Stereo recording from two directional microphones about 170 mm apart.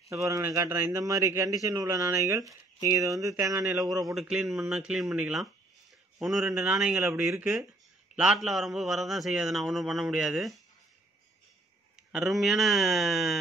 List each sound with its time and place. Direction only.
0.1 s a man's voice: 15° right (ahead or behind)
4.1 s a man's voice: centre (ahead or behind)
12.1 s a man's voice: centre (ahead or behind)